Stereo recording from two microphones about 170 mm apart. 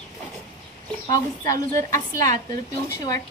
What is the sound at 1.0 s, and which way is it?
A woman's voice, 20° left (ahead or behind).